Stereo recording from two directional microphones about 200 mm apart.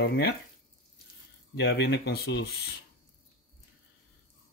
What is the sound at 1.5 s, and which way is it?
Speech, 60° left (ahead or behind).